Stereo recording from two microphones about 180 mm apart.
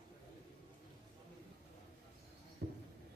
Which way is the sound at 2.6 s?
65° right (ahead or behind).